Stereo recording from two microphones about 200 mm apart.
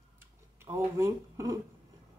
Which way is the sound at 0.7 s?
15° right (ahead or behind).